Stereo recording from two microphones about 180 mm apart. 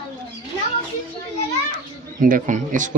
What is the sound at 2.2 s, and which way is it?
Speech, 45° right (ahead or behind).